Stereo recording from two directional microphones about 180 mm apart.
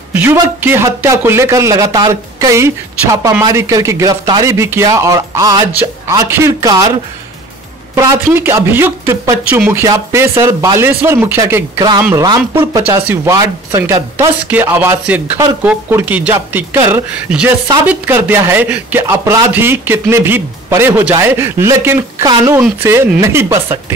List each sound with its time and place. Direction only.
0.1 s speech: 10° right (ahead or behind)
7.9 s speech: 15° right (ahead or behind)